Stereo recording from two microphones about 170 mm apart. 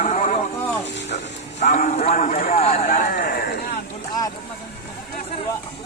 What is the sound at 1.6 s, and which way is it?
Clip-clop, 45° left (ahead or behind).